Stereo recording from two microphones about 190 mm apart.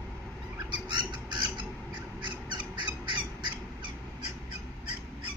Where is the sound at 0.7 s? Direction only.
25° right (ahead or behind).